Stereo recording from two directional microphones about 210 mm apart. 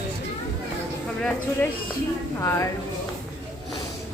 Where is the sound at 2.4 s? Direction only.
15° left (ahead or behind).